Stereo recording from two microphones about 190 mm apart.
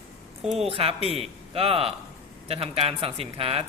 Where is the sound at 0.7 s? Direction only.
30° right (ahead or behind).